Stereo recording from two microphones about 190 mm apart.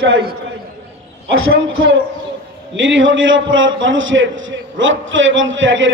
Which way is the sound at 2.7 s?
80° right.